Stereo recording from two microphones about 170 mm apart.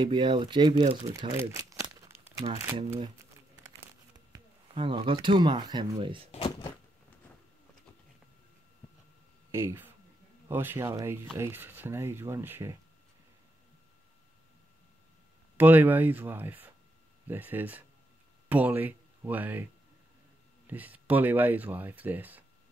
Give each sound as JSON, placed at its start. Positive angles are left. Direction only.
{"t": 0.0, "sound": "speech", "side_deg": -25}
{"t": 2.0, "sound": "crumpling", "side_deg": -15}
{"t": 4.3, "sound": "speech", "side_deg": -30}
{"t": 6.3, "sound": "a sound", "side_deg": 30}
{"t": 9.5, "sound": "speech", "side_deg": -15}
{"t": 15.5, "sound": "speech", "side_deg": -10}
{"t": 20.6, "sound": "speech", "side_deg": -10}